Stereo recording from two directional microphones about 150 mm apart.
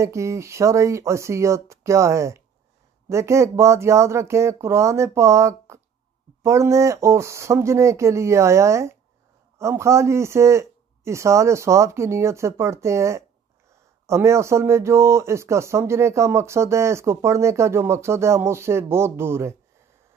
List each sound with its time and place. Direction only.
0.0 s speech: 20° right (ahead or behind)